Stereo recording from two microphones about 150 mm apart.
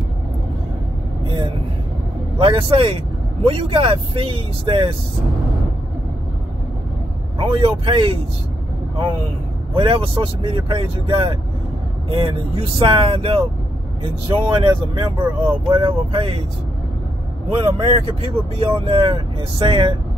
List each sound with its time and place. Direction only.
1.2 s vehicle: 35° right (ahead or behind)
2.3 s speech: 35° right (ahead or behind)
7.3 s speech: 35° right (ahead or behind)
9.8 s speech: 35° right (ahead or behind)
17.7 s speech: 40° right (ahead or behind)